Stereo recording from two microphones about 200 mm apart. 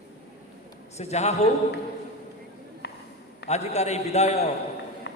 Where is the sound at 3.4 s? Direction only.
35° left (ahead or behind).